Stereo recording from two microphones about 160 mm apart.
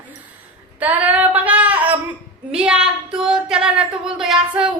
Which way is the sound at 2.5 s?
5° right (ahead or behind).